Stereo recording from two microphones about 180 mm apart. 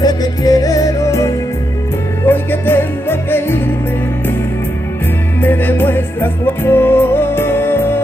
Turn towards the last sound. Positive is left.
turn(degrees=10)  # may be behind; listen again after turning